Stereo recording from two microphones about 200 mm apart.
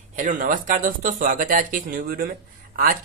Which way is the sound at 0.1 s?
40° right (ahead or behind).